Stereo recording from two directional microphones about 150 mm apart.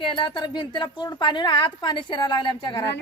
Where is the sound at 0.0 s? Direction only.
35° left (ahead or behind).